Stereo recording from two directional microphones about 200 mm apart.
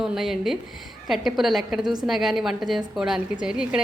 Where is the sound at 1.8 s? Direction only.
20° right (ahead or behind).